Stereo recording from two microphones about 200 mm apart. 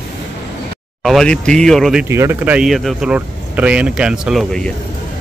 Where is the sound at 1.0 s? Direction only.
5° left (ahead or behind).